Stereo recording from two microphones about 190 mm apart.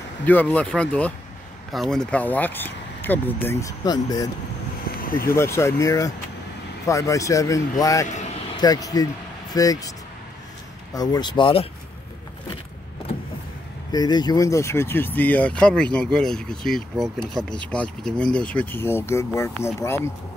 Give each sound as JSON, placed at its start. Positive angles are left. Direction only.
{"t": 0.2, "sound": "speech", "side_deg": 10}
{"t": 5.0, "sound": "vehicle", "side_deg": 50}
{"t": 5.3, "sound": "speech", "side_deg": 15}
{"t": 11.0, "sound": "speech", "side_deg": 20}
{"t": 13.9, "sound": "speech", "side_deg": 20}